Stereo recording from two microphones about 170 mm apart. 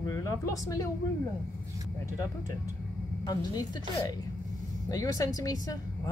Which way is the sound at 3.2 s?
25° left (ahead or behind).